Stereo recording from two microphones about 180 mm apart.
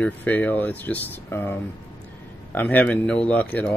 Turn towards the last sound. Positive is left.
turn(degrees=5)  # may be behind; listen again after turning